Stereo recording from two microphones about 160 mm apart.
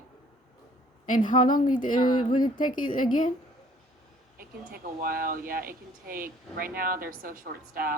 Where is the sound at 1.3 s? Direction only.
55° left (ahead or behind).